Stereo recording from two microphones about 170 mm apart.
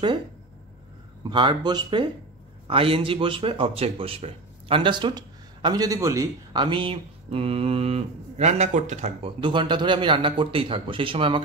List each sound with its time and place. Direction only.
1.2 s a man's voice: 30° right (ahead or behind)
9.4 s a man's voice: 30° right (ahead or behind)